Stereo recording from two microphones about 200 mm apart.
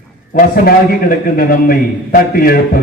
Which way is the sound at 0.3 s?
45° left (ahead or behind).